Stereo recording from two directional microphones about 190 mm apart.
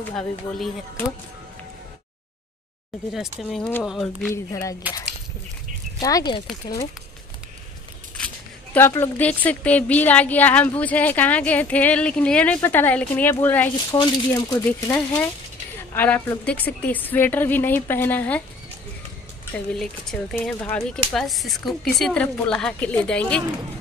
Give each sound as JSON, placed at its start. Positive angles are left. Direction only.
{"t": 0.1, "sound": "speech", "side_deg": 5}
{"t": 3.1, "sound": "speech", "side_deg": 0}
{"t": 4.3, "sound": "a woman's voice", "side_deg": 15}
{"t": 5.9, "sound": "speech", "side_deg": 20}
{"t": 8.2, "sound": "single-lens reflex camera", "side_deg": 5}
{"t": 8.7, "sound": "a woman's voice", "side_deg": 10}
{"t": 13.9, "sound": "speech", "side_deg": 20}
{"t": 14.7, "sound": "a woman's voice", "side_deg": 10}
{"t": 19.5, "sound": "speech", "side_deg": 5}